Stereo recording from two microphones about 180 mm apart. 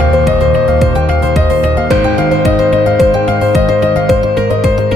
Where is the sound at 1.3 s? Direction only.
Centre (ahead or behind).